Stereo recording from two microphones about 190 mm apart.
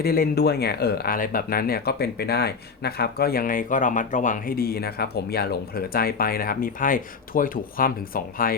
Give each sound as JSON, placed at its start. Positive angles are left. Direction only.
{"t": 0.0, "sound": "speech", "side_deg": 55}